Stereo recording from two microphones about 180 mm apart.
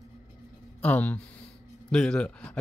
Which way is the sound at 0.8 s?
10° left (ahead or behind).